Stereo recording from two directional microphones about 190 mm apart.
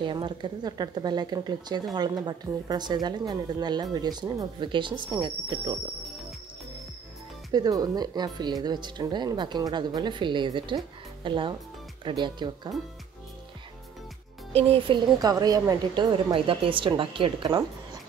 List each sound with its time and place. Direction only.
0.0 s speech: 25° right (ahead or behind)
7.5 s speech: 20° right (ahead or behind)
14.5 s speech: 30° right (ahead or behind)